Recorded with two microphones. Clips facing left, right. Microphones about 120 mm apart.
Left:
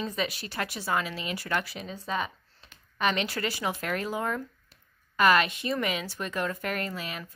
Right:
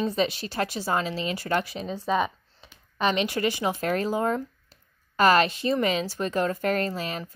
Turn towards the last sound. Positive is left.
turn(degrees=-35)  # may be behind; listen again after turning